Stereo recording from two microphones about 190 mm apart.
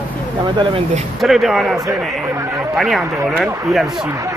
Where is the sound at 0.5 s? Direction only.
30° right (ahead or behind).